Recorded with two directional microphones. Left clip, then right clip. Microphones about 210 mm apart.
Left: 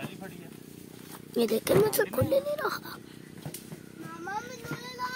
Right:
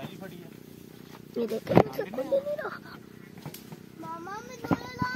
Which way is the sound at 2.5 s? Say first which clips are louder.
Left 4 dB; 30° left (ahead or behind).